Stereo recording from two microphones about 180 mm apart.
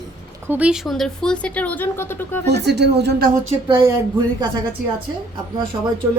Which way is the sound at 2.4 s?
65° right (ahead or behind).